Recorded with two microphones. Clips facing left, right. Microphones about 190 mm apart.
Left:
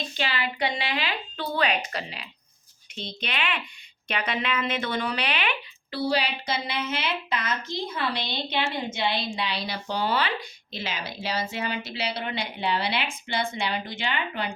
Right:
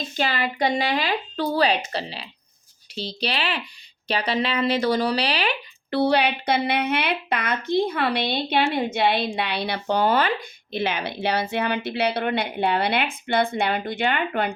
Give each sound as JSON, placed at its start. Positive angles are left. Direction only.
{"t": 0.2, "sound": "a woman's voice", "side_deg": -45}
{"t": 5.9, "sound": "a woman's voice", "side_deg": -60}